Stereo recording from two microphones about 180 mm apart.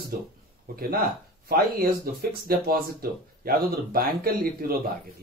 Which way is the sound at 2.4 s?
55° right (ahead or behind).